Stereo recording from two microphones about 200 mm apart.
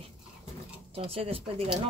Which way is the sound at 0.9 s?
30° right (ahead or behind).